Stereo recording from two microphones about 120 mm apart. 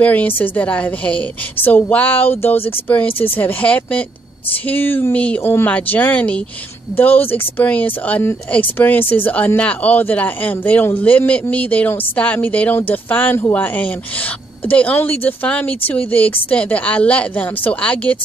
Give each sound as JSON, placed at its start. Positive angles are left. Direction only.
{"t": 0.0, "sound": "speech", "side_deg": 15}